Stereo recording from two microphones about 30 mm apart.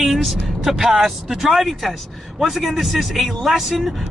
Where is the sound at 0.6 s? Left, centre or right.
Centre.